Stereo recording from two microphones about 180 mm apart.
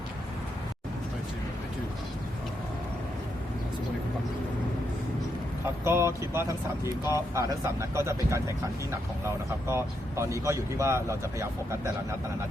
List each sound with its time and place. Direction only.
5.8 s speech: 15° right (ahead or behind)